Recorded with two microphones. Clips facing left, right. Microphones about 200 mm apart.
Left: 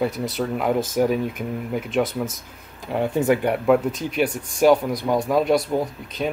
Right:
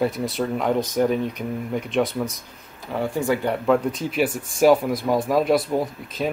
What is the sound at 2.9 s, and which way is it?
Speech, 20° left (ahead or behind).